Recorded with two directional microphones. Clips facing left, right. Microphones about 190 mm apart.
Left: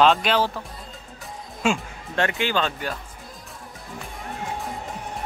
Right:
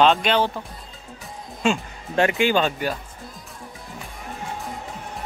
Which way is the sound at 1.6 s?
5° left (ahead or behind).